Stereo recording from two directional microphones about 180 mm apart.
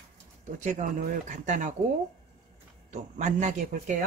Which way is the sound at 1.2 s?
45° right (ahead or behind).